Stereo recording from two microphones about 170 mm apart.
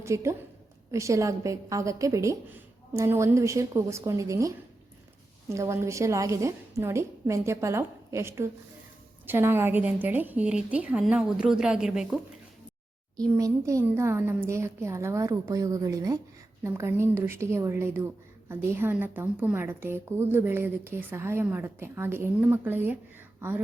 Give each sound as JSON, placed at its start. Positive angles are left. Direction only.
{"t": 0.0, "sound": "a woman's voice", "side_deg": -15}
{"t": 13.3, "sound": "a woman's voice", "side_deg": -15}